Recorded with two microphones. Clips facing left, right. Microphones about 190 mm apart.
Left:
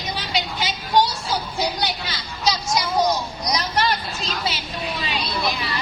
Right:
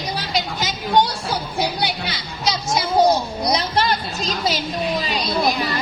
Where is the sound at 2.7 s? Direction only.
30° right (ahead or behind); by 5.8 s 45° right (ahead or behind).